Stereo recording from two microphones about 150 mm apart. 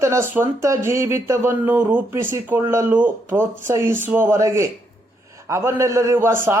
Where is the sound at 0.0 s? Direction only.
15° right (ahead or behind).